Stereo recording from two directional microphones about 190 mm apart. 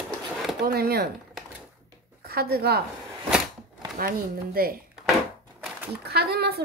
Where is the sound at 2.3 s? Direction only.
55° right (ahead or behind).